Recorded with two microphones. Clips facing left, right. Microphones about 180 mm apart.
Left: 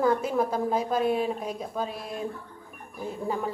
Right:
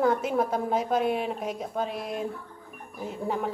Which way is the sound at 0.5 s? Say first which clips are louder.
Even; 65° right (ahead or behind).